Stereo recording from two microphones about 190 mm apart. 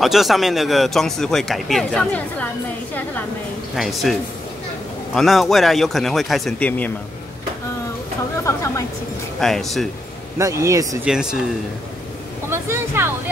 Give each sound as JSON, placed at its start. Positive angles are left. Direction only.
{"t": 0.0, "sound": "speech", "side_deg": 0}
{"t": 8.5, "sound": "a woman's voice", "side_deg": 15}
{"t": 9.4, "sound": "speech", "side_deg": 0}
{"t": 10.3, "sound": "a man's voice", "side_deg": -15}
{"t": 11.1, "sound": "speech", "side_deg": -5}
{"t": 12.4, "sound": "speech", "side_deg": -15}